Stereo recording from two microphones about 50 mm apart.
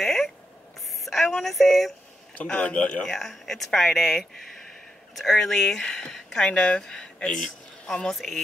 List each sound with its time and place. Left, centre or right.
0.0 s a sound: centre
2.4 s speech: left
3.0 s speech: centre
8.1 s speech: centre